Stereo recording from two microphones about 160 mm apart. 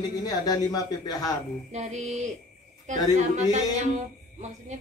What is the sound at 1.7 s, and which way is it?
Speech, 45° right (ahead or behind).